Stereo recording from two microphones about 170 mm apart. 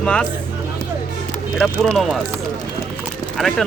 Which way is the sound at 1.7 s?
Centre (ahead or behind).